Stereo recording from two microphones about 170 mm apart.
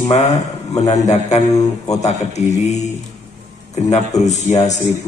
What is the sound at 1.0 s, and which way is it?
A man's voice, 40° left (ahead or behind).